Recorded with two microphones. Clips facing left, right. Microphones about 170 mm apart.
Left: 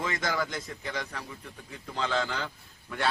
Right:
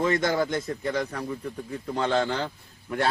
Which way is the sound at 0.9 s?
35° right (ahead or behind).